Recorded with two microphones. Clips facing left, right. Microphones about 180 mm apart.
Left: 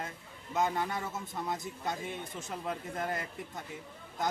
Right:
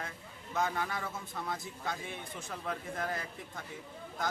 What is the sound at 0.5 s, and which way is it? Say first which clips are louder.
A man's voice: left 2 dB; 20° left (ahead or behind).